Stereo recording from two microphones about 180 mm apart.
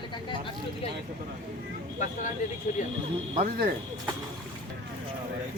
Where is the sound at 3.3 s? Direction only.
55° right (ahead or behind).